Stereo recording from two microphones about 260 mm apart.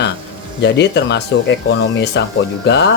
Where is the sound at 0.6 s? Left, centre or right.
Left.